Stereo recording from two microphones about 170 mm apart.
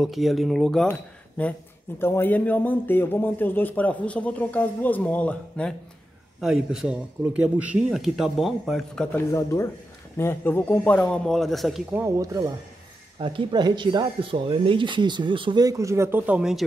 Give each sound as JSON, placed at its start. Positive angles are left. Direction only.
{"t": 0.0, "sound": "a man's voice", "side_deg": 0}
{"t": 9.1, "sound": "a man's voice", "side_deg": 15}
{"t": 11.9, "sound": "speech", "side_deg": -15}